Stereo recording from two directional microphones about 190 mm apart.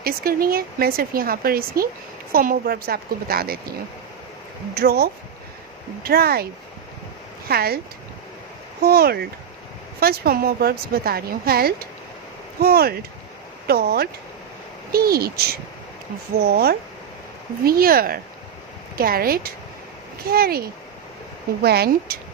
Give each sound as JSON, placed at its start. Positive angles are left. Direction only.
{"t": 0.0, "sound": "speech", "side_deg": -50}
{"t": 4.7, "sound": "speech", "side_deg": -55}
{"t": 8.8, "sound": "speech", "side_deg": -55}